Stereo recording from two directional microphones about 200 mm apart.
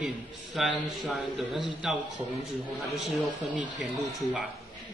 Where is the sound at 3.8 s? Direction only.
Centre (ahead or behind).